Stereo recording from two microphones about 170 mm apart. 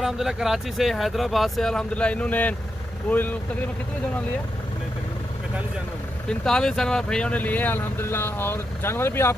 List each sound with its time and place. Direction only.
0.0 s speech: centre (ahead or behind)
6.2 s speech: 5° left (ahead or behind)